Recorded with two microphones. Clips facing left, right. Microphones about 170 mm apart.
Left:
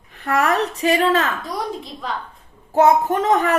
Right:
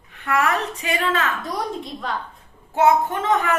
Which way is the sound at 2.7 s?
40° left (ahead or behind).